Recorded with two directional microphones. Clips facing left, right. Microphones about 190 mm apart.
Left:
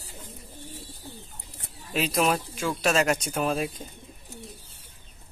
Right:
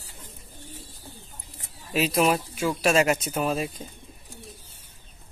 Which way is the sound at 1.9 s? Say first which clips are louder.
Right 2 dB; 5° right (ahead or behind).